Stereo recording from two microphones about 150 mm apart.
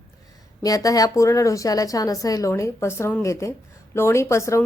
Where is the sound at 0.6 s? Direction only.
25° left (ahead or behind).